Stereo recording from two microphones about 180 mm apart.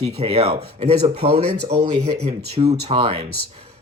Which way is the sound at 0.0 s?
35° right (ahead or behind).